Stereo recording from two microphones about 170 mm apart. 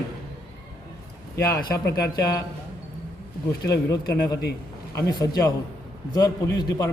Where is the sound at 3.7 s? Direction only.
20° left (ahead or behind).